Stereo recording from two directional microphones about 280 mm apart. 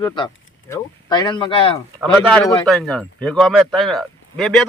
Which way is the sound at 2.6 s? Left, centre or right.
Centre.